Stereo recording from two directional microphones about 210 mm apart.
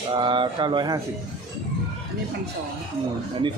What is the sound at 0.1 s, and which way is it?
Speech, 20° right (ahead or behind).